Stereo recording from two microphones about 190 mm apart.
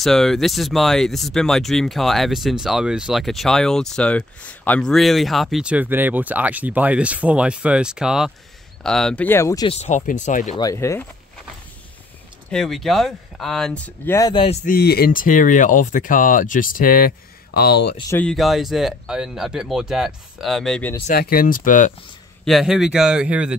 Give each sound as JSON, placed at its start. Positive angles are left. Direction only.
{"t": 0.0, "sound": "speech", "side_deg": 0}
{"t": 9.7, "sound": "speech", "side_deg": 35}
{"t": 10.6, "sound": "speech", "side_deg": 15}
{"t": 12.4, "sound": "speech", "side_deg": 5}
{"t": 14.3, "sound": "speech", "side_deg": 30}
{"t": 14.7, "sound": "speech", "side_deg": 55}
{"t": 17.6, "sound": "speech", "side_deg": 60}
{"t": 18.1, "sound": "speech", "side_deg": 5}
{"t": 21.1, "sound": "speech", "side_deg": 50}
{"t": 22.4, "sound": "speech", "side_deg": 0}